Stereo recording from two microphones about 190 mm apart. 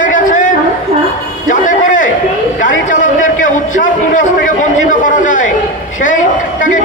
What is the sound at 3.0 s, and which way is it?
A man's voice, 45° left (ahead or behind).